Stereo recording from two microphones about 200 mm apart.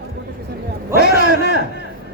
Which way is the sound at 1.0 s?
60° left (ahead or behind).